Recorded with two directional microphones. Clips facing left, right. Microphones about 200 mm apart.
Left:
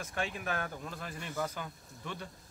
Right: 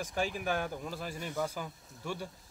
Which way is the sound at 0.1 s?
5° right (ahead or behind).